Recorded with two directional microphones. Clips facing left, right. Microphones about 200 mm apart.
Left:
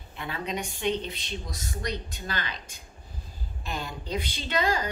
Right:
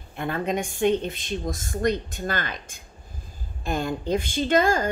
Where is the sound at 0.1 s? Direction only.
50° right (ahead or behind).